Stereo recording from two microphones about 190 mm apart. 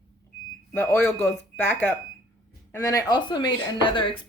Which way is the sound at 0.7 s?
10° left (ahead or behind).